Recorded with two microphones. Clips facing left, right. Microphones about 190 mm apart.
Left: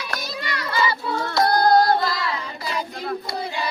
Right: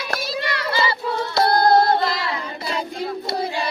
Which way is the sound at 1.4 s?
25° right (ahead or behind).